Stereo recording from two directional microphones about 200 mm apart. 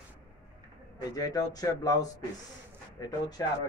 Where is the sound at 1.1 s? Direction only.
20° left (ahead or behind).